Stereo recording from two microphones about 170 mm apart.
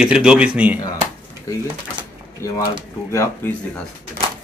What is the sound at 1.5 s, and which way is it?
Speech, 20° left (ahead or behind).